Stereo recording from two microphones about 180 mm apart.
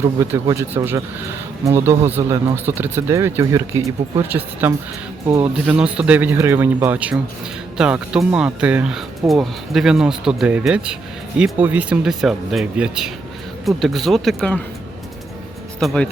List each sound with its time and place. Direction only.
0.0 s speech: 15° right (ahead or behind); by 14.6 s 5° left (ahead or behind)
15.8 s speech: centre (ahead or behind)